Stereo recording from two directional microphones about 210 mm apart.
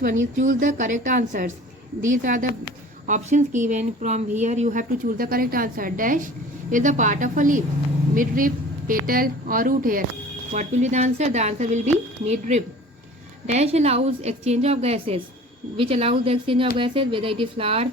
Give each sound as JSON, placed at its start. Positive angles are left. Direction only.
{"t": 0.0, "sound": "a woman's voice", "side_deg": -35}